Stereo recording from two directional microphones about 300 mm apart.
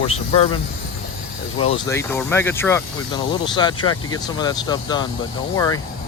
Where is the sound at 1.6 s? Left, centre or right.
Centre.